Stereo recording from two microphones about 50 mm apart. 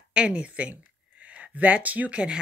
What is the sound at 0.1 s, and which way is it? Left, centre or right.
Speech, right.